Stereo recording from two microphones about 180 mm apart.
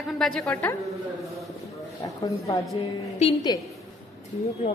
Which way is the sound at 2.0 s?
20° left (ahead or behind).